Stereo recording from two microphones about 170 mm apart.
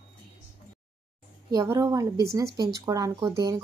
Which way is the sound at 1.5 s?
20° right (ahead or behind).